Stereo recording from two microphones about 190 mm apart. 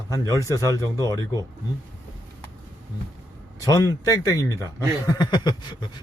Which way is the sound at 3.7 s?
20° left (ahead or behind).